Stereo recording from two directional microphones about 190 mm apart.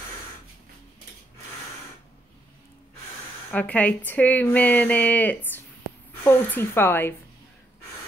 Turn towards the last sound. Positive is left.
turn(degrees=10)  # may be behind; listen again after turning